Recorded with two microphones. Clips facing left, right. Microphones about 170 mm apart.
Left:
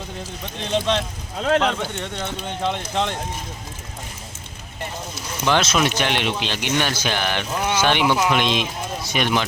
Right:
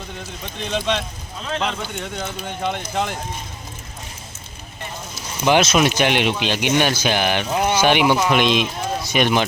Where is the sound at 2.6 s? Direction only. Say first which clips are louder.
Even; 5° right (ahead or behind).